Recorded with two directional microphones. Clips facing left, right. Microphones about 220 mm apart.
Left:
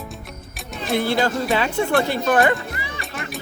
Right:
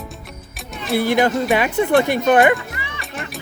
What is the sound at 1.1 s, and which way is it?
Speech, 15° right (ahead or behind).